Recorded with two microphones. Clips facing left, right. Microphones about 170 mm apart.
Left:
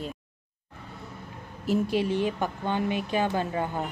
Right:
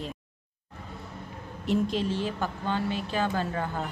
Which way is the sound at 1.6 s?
10° left (ahead or behind).